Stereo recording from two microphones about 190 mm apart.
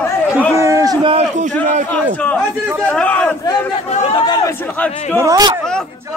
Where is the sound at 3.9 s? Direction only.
30° left (ahead or behind).